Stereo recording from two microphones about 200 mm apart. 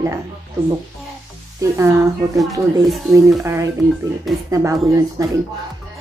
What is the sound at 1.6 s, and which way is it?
Speech, 15° right (ahead or behind).